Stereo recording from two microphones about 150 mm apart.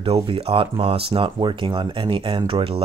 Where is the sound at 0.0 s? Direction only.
40° right (ahead or behind).